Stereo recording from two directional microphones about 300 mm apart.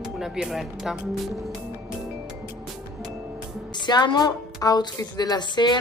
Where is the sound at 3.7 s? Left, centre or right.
Centre.